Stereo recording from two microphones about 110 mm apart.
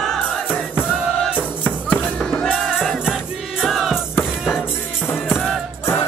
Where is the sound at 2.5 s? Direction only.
5° right (ahead or behind).